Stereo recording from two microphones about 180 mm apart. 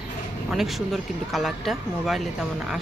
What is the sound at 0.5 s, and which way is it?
Speech, centre (ahead or behind).